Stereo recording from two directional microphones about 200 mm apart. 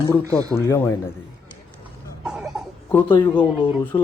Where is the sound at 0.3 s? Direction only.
15° right (ahead or behind).